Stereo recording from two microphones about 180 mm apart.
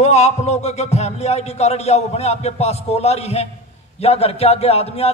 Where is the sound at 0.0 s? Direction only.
40° left (ahead or behind).